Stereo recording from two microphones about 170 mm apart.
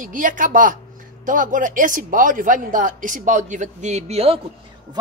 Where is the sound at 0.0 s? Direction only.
50° right (ahead or behind).